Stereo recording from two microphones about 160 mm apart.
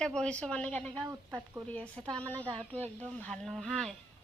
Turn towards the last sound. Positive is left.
turn(degrees=5)  # may be behind; listen again after turning